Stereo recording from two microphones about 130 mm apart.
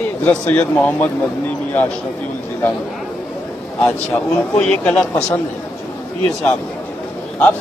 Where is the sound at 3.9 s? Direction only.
10° left (ahead or behind).